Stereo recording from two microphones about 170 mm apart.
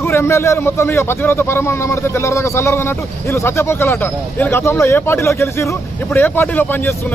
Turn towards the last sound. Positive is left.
turn(degrees=10)  # may be behind; listen again after turning